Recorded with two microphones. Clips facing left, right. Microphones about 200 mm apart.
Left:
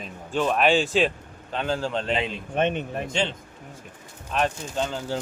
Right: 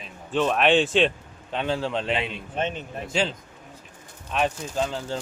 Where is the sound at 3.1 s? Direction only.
5° right (ahead or behind).